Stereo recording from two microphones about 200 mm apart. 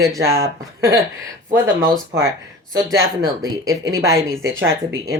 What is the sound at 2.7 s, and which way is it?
Speech, 15° right (ahead or behind).